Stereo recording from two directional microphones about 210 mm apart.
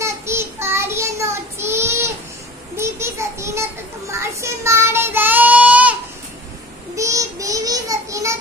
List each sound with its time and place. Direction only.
0.0 s child singing: 10° right (ahead or behind)
2.7 s a sound: 10° right (ahead or behind)
4.1 s child singing: 15° right (ahead or behind)
7.0 s child singing: 15° right (ahead or behind)